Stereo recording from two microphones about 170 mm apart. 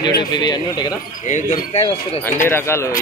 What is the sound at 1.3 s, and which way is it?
Speech, 45° left (ahead or behind).